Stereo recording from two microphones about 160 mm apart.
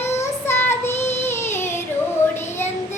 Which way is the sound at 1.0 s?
15° left (ahead or behind).